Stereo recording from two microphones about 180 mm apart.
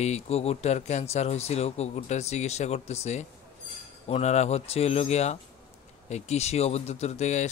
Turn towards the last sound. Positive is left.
turn(degrees=40)  # may be behind; listen again after turning